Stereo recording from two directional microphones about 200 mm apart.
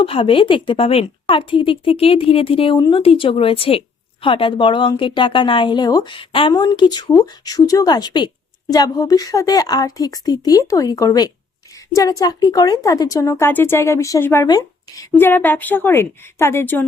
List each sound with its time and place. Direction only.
0.0 s a woman's voice: 25° left (ahead or behind); by 16.8 s 10° left (ahead or behind)